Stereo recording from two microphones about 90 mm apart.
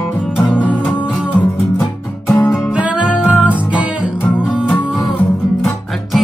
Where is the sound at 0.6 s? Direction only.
15° left (ahead or behind).